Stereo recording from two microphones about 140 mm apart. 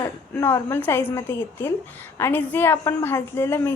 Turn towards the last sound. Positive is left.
turn(degrees=15)  # may be behind; listen again after turning